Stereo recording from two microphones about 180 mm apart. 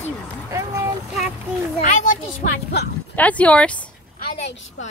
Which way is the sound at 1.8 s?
45° left (ahead or behind).